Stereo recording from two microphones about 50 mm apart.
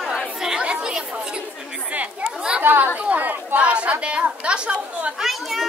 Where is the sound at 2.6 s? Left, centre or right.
Right.